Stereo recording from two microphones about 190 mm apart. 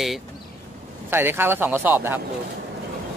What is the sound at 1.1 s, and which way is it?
Speech, 10° right (ahead or behind).